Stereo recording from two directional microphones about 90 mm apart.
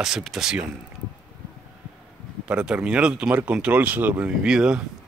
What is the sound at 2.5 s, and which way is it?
A man's voice, 10° right (ahead or behind).